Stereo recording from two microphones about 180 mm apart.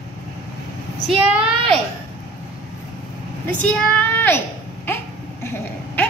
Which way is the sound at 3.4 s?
10° left (ahead or behind).